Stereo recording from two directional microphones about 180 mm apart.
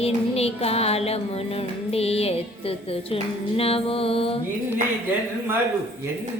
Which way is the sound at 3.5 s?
30° left (ahead or behind).